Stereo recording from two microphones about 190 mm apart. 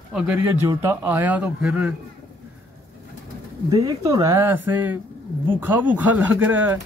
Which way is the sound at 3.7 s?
20° right (ahead or behind).